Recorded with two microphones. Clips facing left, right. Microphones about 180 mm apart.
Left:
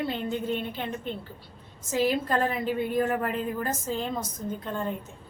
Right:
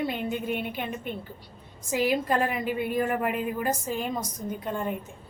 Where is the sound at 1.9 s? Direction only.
10° right (ahead or behind).